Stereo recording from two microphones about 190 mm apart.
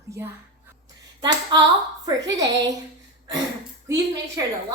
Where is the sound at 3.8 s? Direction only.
15° right (ahead or behind).